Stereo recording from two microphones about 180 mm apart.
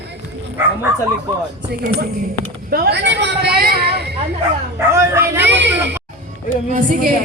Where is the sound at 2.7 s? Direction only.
65° right (ahead or behind).